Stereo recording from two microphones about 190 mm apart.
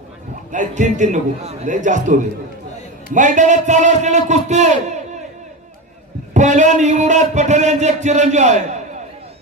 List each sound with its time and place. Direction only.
0.5 s a man's voice: 40° right (ahead or behind)
3.2 s a man's voice: 40° right (ahead or behind)
6.3 s a man's voice: 40° right (ahead or behind)